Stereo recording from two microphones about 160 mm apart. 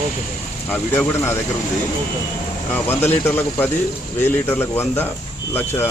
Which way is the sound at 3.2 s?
15° left (ahead or behind).